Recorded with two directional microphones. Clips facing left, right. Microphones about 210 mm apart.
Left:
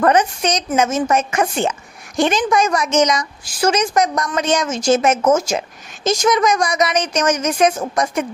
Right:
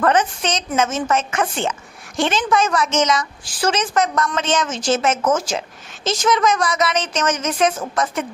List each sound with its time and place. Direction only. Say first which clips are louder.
0.0 s speech: left 3 dB; 15° left (ahead or behind)